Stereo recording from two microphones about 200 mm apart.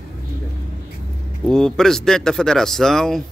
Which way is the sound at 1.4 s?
Centre (ahead or behind).